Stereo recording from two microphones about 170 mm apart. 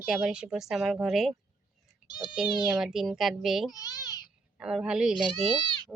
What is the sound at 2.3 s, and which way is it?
A woman's voice, 5° right (ahead or behind).